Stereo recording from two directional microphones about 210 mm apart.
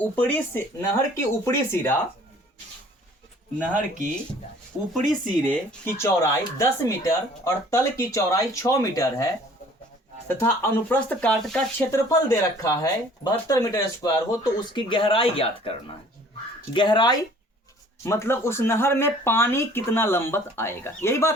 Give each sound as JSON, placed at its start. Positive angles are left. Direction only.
{"t": 0.0, "sound": "speech", "side_deg": 10}
{"t": 3.8, "sound": "speech", "side_deg": -40}
{"t": 4.9, "sound": "speech", "side_deg": 5}
{"t": 10.4, "sound": "speech", "side_deg": 10}
{"t": 11.9, "sound": "speech", "side_deg": 15}